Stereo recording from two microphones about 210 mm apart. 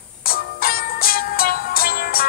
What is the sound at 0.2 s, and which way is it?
Music, 45° left (ahead or behind).